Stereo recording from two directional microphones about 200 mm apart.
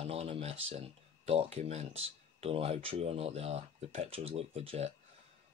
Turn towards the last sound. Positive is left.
turn(degrees=-30)  # may be behind; listen again after turning